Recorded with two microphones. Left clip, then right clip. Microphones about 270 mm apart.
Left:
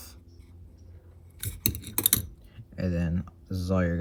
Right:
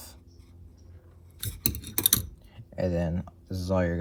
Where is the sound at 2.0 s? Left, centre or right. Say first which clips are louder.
Right 2 dB; right.